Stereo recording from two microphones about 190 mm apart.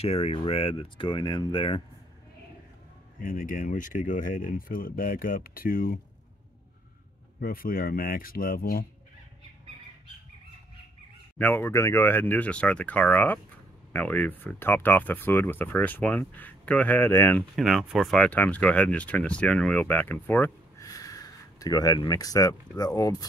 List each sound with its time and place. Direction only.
0.0 s speech: 30° left (ahead or behind)
3.2 s speech: 45° left (ahead or behind)
7.3 s speech: 50° left (ahead or behind)
11.3 s speech: 10° left (ahead or behind)